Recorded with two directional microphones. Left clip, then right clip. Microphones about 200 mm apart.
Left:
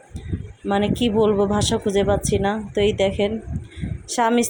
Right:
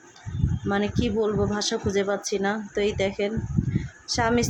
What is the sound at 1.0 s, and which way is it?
A woman's voice, 15° left (ahead or behind).